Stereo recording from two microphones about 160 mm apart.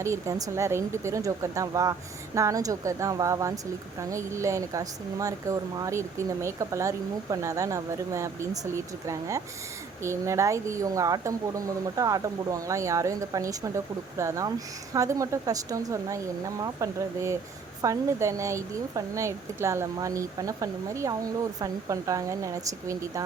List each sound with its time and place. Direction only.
0.0 s speech: 20° right (ahead or behind)